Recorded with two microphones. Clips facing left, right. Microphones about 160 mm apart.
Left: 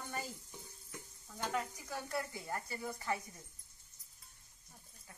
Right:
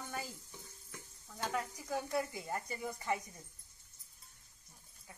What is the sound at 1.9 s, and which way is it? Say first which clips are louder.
Speech: right 4 dB; 15° right (ahead or behind).